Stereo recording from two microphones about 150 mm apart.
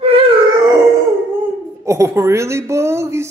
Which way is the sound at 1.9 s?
20° right (ahead or behind).